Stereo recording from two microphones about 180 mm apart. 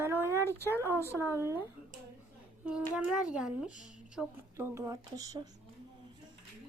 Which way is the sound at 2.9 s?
5° right (ahead or behind).